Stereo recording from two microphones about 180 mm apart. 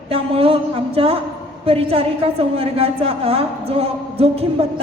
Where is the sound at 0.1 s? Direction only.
30° right (ahead or behind).